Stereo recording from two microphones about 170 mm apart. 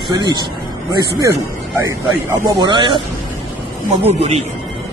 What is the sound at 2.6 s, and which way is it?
Speech, 25° right (ahead or behind).